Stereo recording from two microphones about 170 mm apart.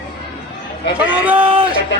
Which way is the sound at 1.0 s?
10° right (ahead or behind).